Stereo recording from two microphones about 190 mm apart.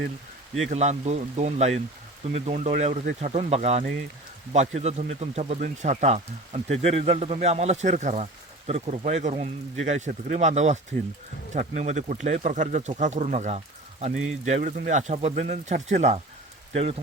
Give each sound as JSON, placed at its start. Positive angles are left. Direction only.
{"t": 0.7, "sound": "speech", "side_deg": -35}